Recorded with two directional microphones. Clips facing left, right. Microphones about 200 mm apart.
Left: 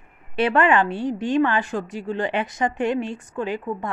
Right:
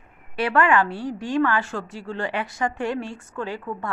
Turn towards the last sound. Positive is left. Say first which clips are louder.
# left 4 dB
turn(degrees=15)  # may be behind; listen again after turning